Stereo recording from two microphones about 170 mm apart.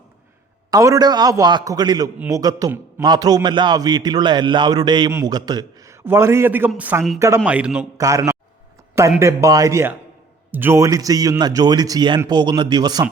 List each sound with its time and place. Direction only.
0.7 s a man's voice: 20° right (ahead or behind)
2.1 s a man's voice: 10° right (ahead or behind)
2.4 s a man's voice: 20° right (ahead or behind); by 7.9 s 5° right (ahead or behind)
7.9 s a man's voice: 20° right (ahead or behind)